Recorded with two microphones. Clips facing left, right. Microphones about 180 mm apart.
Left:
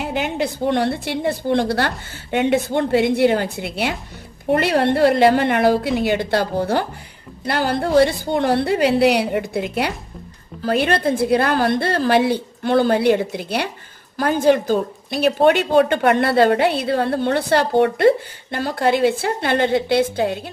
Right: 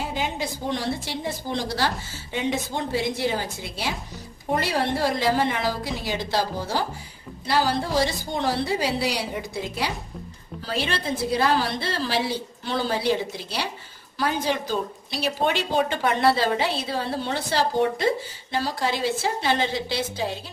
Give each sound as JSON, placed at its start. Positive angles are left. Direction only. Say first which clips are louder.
{"t": 0.0, "sound": "a woman's voice", "louder": "left 6 dB", "side_deg": 65}